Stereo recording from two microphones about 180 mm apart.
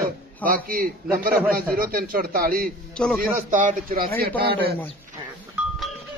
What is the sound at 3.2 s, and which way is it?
Speech, 45° right (ahead or behind).